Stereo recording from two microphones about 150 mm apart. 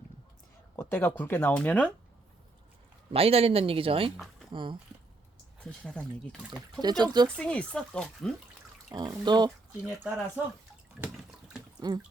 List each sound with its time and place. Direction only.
0.8 s speech: 15° left (ahead or behind)
3.1 s speech: 40° right (ahead or behind)
5.6 s speech: 5° left (ahead or behind)
6.8 s speech: 30° right (ahead or behind)
7.3 s speech: 5° left (ahead or behind)
8.9 s speech: 30° right (ahead or behind)
9.8 s speech: 10° right (ahead or behind)
11.8 s speech: 25° right (ahead or behind)